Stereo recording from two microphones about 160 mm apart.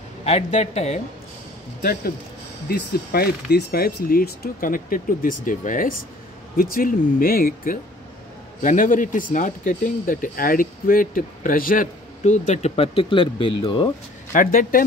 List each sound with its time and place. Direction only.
0.2 s a woman's voice: 45° left (ahead or behind)
1.8 s speech: 70° left (ahead or behind); by 13.9 s 30° left (ahead or behind)
14.3 s speech: 60° left (ahead or behind)